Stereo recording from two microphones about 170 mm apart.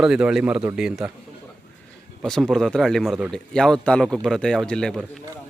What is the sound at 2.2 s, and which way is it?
Speech, centre (ahead or behind).